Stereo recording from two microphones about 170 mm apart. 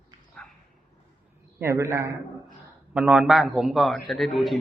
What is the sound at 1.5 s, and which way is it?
A man's voice, 15° right (ahead or behind).